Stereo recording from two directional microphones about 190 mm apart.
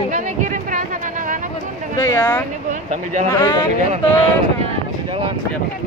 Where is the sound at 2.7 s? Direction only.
40° right (ahead or behind).